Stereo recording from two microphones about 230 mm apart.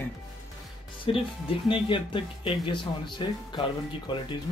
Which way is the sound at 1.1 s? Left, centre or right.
Left.